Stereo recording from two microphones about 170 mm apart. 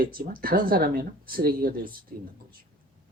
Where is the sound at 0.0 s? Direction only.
60° right (ahead or behind).